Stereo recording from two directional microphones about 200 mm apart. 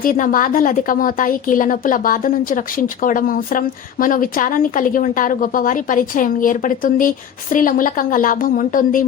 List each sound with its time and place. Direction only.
0.0 s speech: 45° left (ahead or behind)